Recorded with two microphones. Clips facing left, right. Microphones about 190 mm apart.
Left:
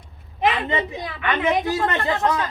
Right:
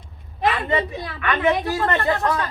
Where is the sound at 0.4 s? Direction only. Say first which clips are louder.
Even; 20° left (ahead or behind).